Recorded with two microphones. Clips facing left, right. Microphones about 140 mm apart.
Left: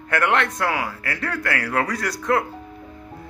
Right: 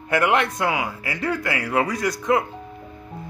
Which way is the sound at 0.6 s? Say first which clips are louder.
Even; 20° right (ahead or behind).